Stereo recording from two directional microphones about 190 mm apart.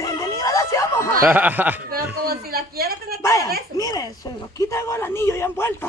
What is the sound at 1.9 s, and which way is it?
A man's voice, 55° right (ahead or behind).